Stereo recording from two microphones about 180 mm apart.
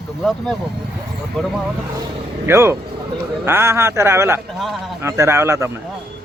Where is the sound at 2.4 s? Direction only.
15° right (ahead or behind).